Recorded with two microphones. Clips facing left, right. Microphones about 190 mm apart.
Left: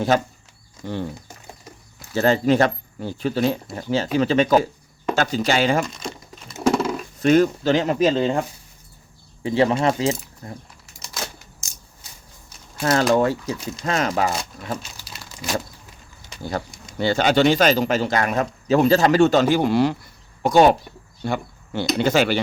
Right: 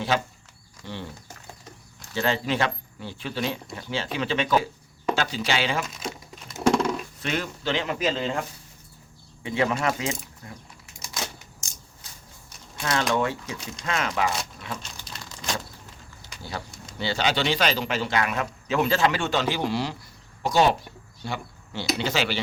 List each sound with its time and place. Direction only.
0.1 s speech: 45° left (ahead or behind)
2.1 s speech: 45° left (ahead or behind)
5.8 s crumpling: 5° right (ahead or behind)
7.2 s speech: 45° left (ahead or behind)
12.8 s speech: 40° left (ahead or behind)
14.8 s crumpling: 5° left (ahead or behind)
16.4 s speech: 45° left (ahead or behind)